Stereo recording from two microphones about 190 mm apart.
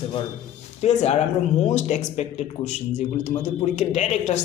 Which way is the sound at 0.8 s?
35° left (ahead or behind).